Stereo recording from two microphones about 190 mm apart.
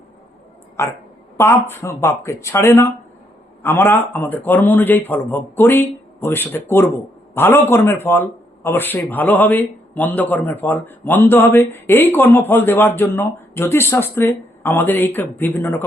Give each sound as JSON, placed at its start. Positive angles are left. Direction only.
{"t": 0.8, "sound": "speech", "side_deg": 15}